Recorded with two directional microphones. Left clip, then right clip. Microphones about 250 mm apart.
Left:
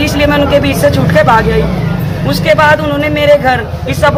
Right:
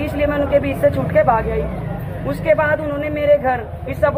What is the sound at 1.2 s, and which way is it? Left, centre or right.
Speech, left.